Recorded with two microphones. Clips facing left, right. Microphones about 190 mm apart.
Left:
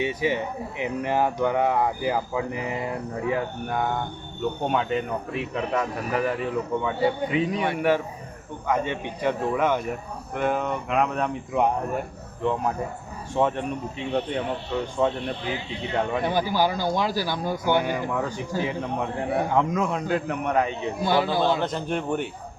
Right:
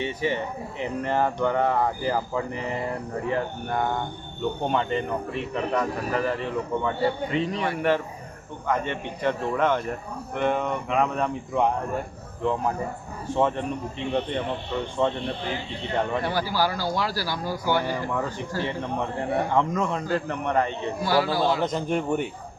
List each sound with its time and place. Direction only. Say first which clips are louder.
0.0 s speech: left 2 dB; 10° left (ahead or behind)
14.9 s speech: even; 5° left (ahead or behind)
16.3 s speech: left 2 dB; 20° left (ahead or behind)
18.1 s speech: left 1 dB; centre (ahead or behind)
21.0 s speech: left 1 dB; 20° left (ahead or behind)
21.6 s a man's voice: right 2 dB; 10° right (ahead or behind)